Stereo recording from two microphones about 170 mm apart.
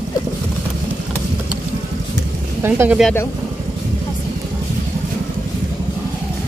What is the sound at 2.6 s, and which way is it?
Speech, 15° right (ahead or behind).